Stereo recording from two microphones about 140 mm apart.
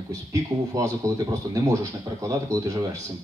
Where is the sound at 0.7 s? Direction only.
25° right (ahead or behind).